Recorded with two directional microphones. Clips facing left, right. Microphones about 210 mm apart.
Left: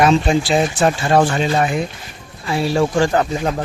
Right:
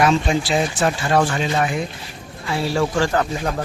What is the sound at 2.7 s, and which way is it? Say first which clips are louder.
Speech: left 4 dB; 20° left (ahead or behind).